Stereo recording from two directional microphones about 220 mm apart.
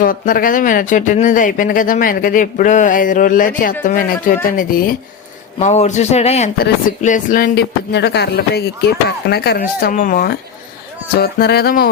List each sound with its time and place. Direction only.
0.0 s speech: 40° left (ahead or behind)
5.5 s speech: 30° left (ahead or behind)